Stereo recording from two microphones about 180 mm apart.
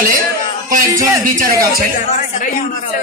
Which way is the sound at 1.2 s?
50° right (ahead or behind).